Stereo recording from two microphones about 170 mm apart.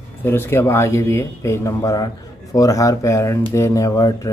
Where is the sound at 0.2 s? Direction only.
15° left (ahead or behind).